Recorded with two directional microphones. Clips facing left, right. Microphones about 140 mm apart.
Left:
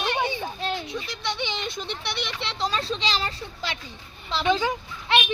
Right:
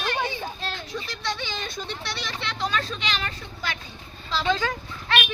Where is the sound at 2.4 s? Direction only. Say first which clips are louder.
Right 1 dB; 30° left (ahead or behind).